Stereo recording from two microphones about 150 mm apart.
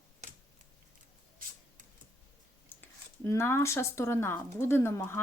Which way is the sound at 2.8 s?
15° left (ahead or behind).